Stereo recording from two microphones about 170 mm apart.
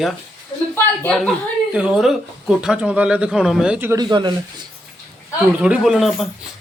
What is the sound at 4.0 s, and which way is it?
Speech, 25° right (ahead or behind).